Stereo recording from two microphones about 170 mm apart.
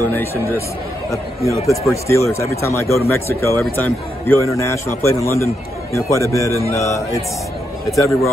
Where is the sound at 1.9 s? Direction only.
15° left (ahead or behind).